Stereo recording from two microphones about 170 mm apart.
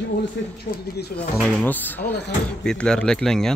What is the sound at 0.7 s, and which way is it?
Speech, 60° left (ahead or behind).